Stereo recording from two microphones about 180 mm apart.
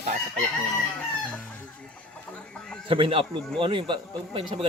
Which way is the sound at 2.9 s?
30° right (ahead or behind).